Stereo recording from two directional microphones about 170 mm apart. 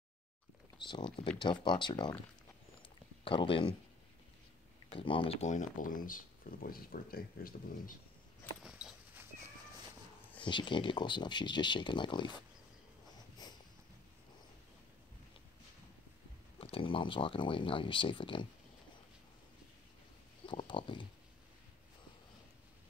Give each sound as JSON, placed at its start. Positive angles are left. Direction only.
{"t": 0.7, "sound": "speech", "side_deg": 30}
{"t": 3.3, "sound": "speech", "side_deg": 30}
{"t": 4.9, "sound": "speech", "side_deg": 30}
{"t": 8.6, "sound": "dog", "side_deg": -5}
{"t": 10.4, "sound": "speech", "side_deg": 30}
{"t": 13.4, "sound": "a sound", "side_deg": 25}
{"t": 16.5, "sound": "speech", "side_deg": 35}
{"t": 20.4, "sound": "a sound", "side_deg": 30}